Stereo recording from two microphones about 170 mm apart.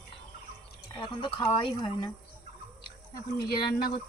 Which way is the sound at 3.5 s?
65° left (ahead or behind).